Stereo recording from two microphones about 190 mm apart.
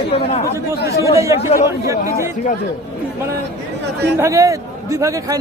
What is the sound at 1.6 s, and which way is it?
Speech, 15° right (ahead or behind).